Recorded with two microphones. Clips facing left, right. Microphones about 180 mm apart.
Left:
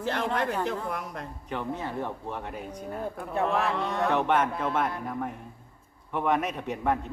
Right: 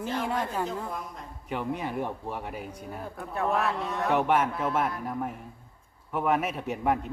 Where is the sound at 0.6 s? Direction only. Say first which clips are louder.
Left 2 dB; 70° left (ahead or behind).